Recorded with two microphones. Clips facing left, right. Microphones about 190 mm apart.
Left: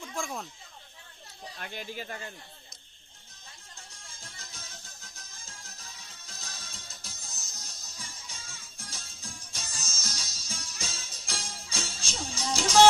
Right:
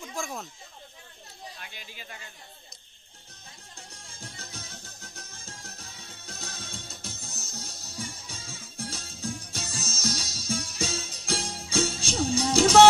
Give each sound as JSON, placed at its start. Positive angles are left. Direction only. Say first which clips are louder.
{"t": 0.0, "sound": "a sound", "louder": "right 1 dB", "side_deg": 0}
{"t": 1.6, "sound": "speech", "louder": "left 8 dB", "side_deg": 50}
{"t": 4.2, "sound": "music", "louder": "right 7 dB", "side_deg": -65}